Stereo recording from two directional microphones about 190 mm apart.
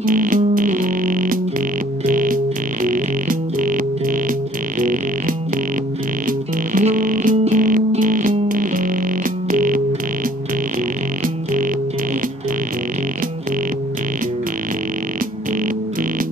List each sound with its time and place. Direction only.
0.0 s music: 45° right (ahead or behind)